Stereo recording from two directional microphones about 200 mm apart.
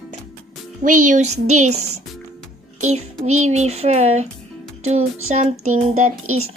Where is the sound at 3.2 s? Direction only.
35° right (ahead or behind).